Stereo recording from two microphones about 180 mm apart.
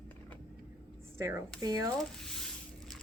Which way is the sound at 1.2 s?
15° right (ahead or behind).